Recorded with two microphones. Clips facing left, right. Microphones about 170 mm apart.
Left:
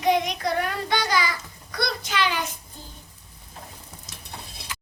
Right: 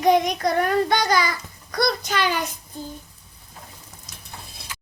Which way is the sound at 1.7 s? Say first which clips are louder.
Right 6 dB; 45° right (ahead or behind).